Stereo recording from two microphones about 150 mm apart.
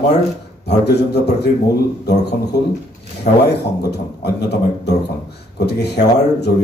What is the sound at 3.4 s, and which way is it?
A man's voice, 90° left.